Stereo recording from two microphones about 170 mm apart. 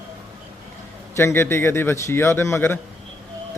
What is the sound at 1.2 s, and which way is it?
A man's voice, 15° left (ahead or behind).